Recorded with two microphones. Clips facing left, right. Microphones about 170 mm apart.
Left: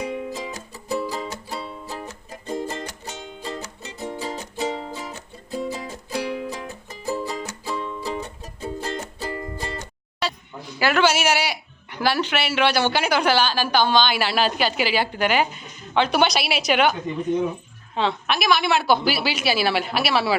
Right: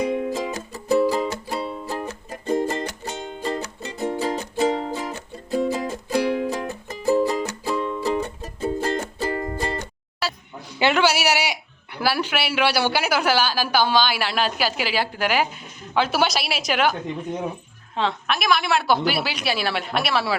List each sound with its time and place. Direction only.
0.0 s music: 60° right (ahead or behind); by 4.2 s 75° right (ahead or behind)
4.2 s music: 55° right (ahead or behind)
10.2 s a sound: 5° right (ahead or behind)
10.8 s a sound: 25° right (ahead or behind)
11.0 s speech: 10° right (ahead or behind)
17.9 s a woman's voice: centre (ahead or behind)